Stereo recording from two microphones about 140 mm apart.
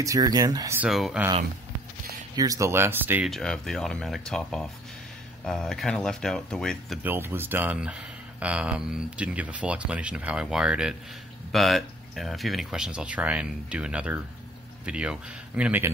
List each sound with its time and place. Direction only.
0.0 s speech: 25° right (ahead or behind)
0.7 s speech: centre (ahead or behind)
2.3 s speech: 25° right (ahead or behind)
3.3 s speech: 5° left (ahead or behind)
7.0 s speech: 15° right (ahead or behind)